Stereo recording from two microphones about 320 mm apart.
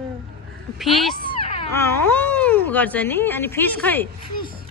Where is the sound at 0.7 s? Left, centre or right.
Centre.